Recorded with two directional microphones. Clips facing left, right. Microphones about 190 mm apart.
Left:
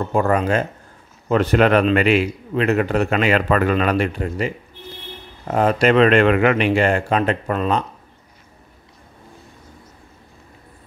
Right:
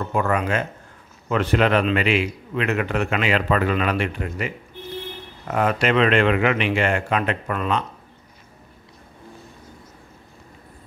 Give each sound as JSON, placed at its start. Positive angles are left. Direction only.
{"t": 0.1, "sound": "a man's voice", "side_deg": 35}